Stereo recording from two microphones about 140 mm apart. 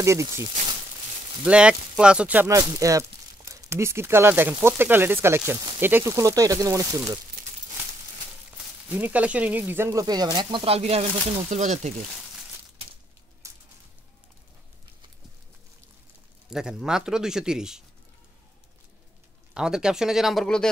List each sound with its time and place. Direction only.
0.0 s speech: 20° right (ahead or behind)
1.4 s speech: 5° right (ahead or behind)
2.5 s speech: 25° right (ahead or behind)
8.8 s speech: 10° right (ahead or behind); by 10.6 s 30° right (ahead or behind)
10.6 s speech: 45° right (ahead or behind)
13.4 s a sound: 20° right (ahead or behind)
16.4 s speech: 5° right (ahead or behind)
19.5 s speech: 5° right (ahead or behind)